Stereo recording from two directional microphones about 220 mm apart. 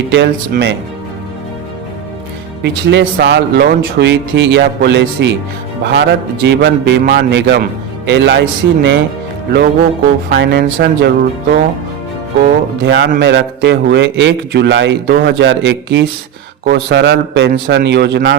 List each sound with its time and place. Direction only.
0.1 s a man's voice: 50° right (ahead or behind)
2.6 s a man's voice: 50° right (ahead or behind)
10.2 s a man's voice: 50° right (ahead or behind)
12.4 s a man's voice: 50° right (ahead or behind)